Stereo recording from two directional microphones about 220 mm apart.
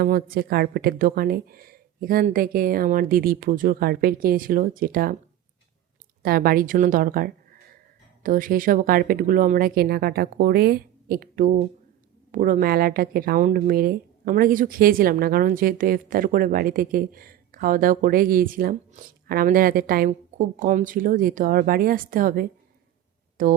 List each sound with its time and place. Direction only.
0.0 s speech: 40° right (ahead or behind)
6.2 s speech: 40° right (ahead or behind)